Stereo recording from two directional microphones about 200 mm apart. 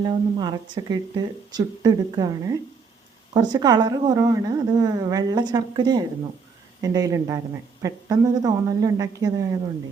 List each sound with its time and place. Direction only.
0.0 s a woman's voice: 20° right (ahead or behind)